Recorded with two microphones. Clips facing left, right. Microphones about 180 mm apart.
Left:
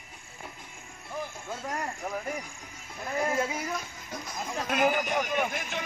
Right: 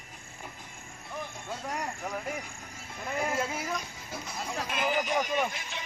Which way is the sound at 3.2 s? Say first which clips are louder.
Left 3 dB; centre (ahead or behind).